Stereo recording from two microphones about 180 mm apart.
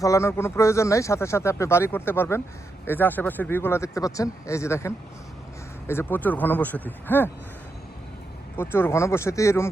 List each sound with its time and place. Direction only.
0.0 s a man's voice: 15° left (ahead or behind)
8.5 s a man's voice: 15° left (ahead or behind)